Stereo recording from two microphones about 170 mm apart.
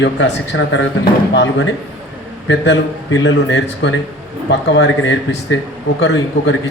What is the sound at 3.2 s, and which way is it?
A man's voice, 90° left.